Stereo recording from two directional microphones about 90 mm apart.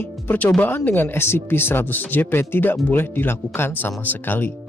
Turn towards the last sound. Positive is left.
turn(degrees=20)  # may be behind; listen again after turning